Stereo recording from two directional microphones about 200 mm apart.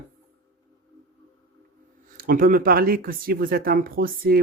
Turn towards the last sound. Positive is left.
turn(degrees=-45)  # may be behind; listen again after turning